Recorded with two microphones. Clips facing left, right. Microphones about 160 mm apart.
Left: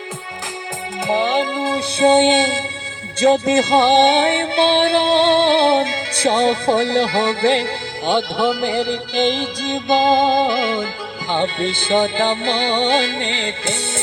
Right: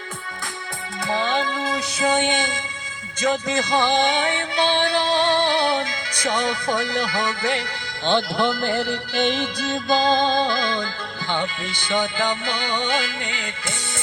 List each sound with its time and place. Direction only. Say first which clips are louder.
1.0 s music: left 5 dB; 20° left (ahead or behind)
8.0 s music: left 3 dB; 10° left (ahead or behind)
9.7 s music: left 5 dB; centre (ahead or behind)
11.3 s music: left 7 dB; 25° left (ahead or behind)